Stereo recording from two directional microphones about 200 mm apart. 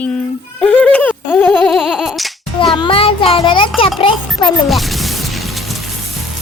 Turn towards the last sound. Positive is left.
turn(degrees=0)  # may be behind; listen again after turning